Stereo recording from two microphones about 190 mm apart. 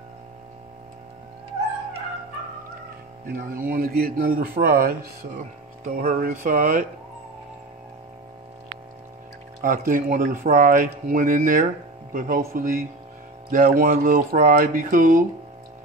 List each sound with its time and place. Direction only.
3.3 s speech: 50° right (ahead or behind)
6.0 s speech: 45° right (ahead or behind)
9.6 s speech: 45° right (ahead or behind)